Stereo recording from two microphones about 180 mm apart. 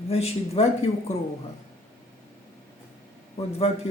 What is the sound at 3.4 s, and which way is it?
Speech, 35° left (ahead or behind).